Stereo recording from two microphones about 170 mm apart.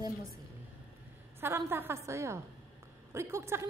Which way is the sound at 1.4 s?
15° right (ahead or behind).